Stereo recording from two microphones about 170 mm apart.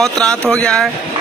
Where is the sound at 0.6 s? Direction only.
5° left (ahead or behind).